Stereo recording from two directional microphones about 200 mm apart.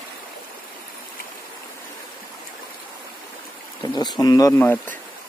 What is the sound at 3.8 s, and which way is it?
Speech, 20° left (ahead or behind).